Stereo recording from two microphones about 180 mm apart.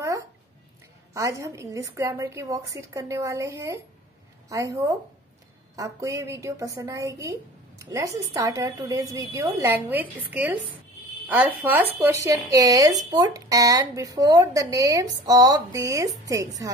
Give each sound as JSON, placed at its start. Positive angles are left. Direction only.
{"t": 1.1, "sound": "a woman's voice", "side_deg": -15}